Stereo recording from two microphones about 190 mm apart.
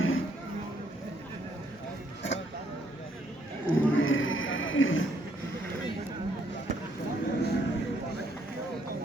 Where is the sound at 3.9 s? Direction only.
90° left.